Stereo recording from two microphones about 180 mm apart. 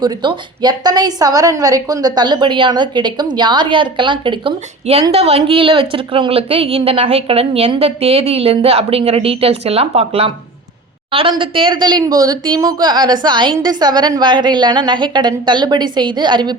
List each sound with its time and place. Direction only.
0.0 s a woman's voice: 25° right (ahead or behind)